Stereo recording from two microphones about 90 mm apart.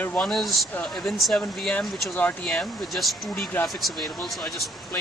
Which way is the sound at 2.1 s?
20° left (ahead or behind).